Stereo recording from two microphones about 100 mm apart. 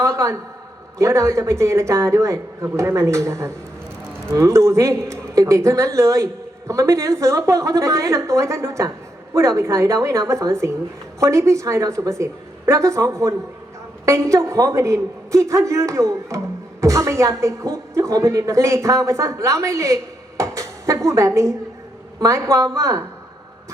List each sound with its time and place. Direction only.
0.0 s a woman's voice: 30° right (ahead or behind)